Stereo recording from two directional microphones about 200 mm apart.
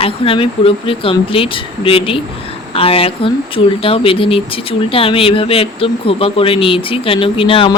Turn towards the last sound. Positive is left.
turn(degrees=25)  # may be behind; listen again after turning